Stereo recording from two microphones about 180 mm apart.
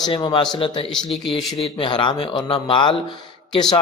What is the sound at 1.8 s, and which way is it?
Speech, 25° left (ahead or behind).